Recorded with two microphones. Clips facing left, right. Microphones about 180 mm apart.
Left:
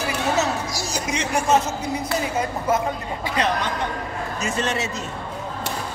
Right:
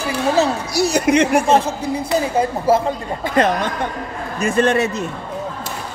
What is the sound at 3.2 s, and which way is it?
Speech, 50° right (ahead or behind).